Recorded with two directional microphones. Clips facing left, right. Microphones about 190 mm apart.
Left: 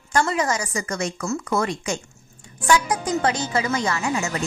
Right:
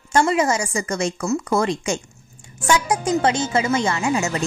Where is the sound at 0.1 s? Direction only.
20° right (ahead or behind).